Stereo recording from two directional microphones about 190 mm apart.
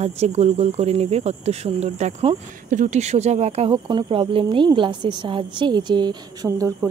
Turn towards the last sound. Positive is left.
turn(degrees=-15)  # may be behind; listen again after turning